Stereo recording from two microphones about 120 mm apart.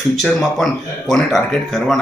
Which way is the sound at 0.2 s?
5° left (ahead or behind).